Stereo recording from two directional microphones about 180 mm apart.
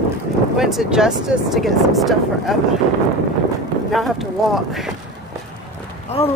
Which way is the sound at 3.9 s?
Centre (ahead or behind).